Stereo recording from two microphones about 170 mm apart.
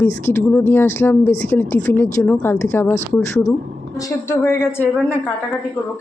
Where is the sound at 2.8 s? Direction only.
45° left (ahead or behind).